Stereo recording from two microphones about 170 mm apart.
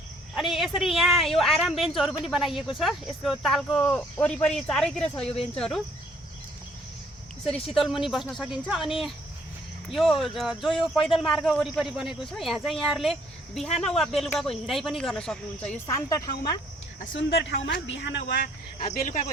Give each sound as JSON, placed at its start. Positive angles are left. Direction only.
{"t": 0.3, "sound": "speech", "side_deg": 0}
{"t": 7.7, "sound": "speech", "side_deg": 0}
{"t": 15.9, "sound": "speech", "side_deg": 20}
{"t": 17.2, "sound": "speech", "side_deg": 90}